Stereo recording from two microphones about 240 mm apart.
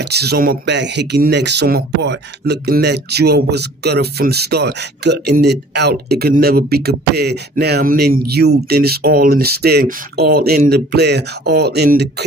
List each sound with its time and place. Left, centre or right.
0.0 s speech: right